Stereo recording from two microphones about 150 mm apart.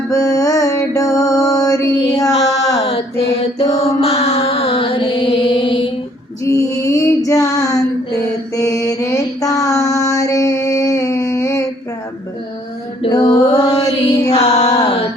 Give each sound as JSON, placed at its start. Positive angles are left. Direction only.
{"t": 0.1, "sound": "music", "side_deg": 25}
{"t": 2.1, "sound": "child singing", "side_deg": 25}
{"t": 4.0, "sound": "mantra", "side_deg": 45}
{"t": 6.4, "sound": "female singing", "side_deg": 20}
{"t": 8.5, "sound": "mantra", "side_deg": 25}
{"t": 13.0, "sound": "music", "side_deg": 30}
{"t": 14.5, "sound": "a sound", "side_deg": 25}